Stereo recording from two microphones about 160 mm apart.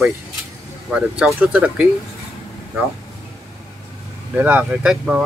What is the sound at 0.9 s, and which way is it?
Speech, 5° right (ahead or behind).